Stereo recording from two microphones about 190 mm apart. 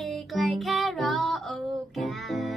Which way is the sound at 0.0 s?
Centre (ahead or behind).